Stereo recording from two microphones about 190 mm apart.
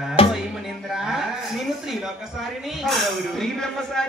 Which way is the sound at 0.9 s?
Centre (ahead or behind).